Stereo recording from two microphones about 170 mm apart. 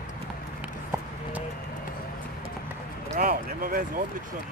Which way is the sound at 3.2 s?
55° right (ahead or behind).